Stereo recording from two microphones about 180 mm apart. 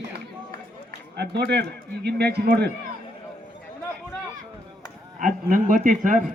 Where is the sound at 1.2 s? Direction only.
65° right (ahead or behind).